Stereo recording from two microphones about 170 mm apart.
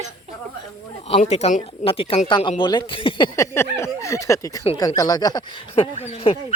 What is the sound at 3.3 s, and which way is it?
Speech, 15° left (ahead or behind).